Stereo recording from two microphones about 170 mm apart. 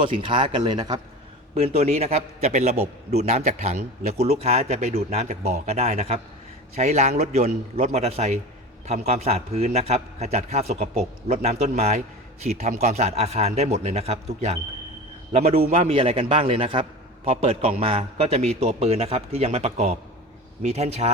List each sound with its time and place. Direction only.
0.0 s a man's voice: 30° right (ahead or behind)
1.5 s a man's voice: 40° right (ahead or behind)